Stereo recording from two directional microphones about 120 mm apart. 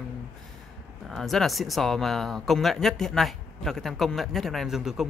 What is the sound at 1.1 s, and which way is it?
Speech, centre (ahead or behind).